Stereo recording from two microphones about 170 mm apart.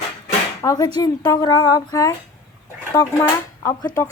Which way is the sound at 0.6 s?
20° left (ahead or behind).